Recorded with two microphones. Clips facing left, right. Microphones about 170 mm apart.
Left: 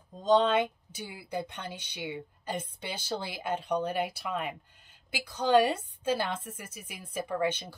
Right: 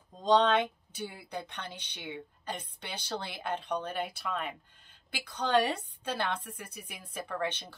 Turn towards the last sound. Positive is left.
turn(degrees=10)  # may be behind; listen again after turning